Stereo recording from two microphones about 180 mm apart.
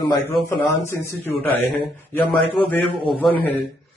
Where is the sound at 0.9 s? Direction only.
15° left (ahead or behind).